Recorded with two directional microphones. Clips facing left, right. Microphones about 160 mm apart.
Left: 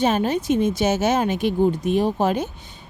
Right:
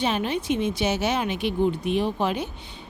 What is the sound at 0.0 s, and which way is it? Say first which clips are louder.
A woman's voice: left 5 dB; 45° left (ahead or behind).